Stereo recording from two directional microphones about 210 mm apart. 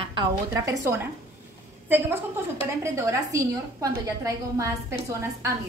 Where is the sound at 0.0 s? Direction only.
20° right (ahead or behind).